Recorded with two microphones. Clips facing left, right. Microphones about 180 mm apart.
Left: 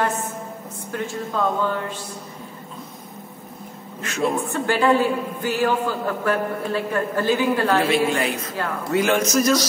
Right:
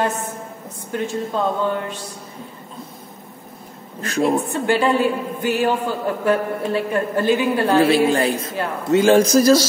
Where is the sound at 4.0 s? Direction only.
35° right (ahead or behind).